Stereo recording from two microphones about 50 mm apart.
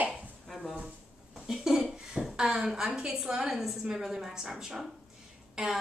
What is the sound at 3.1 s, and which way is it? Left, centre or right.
Speech, centre.